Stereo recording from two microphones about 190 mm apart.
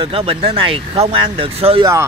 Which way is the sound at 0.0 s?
30° right (ahead or behind).